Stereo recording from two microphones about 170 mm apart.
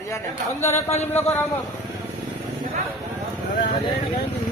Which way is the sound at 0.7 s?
40° left (ahead or behind).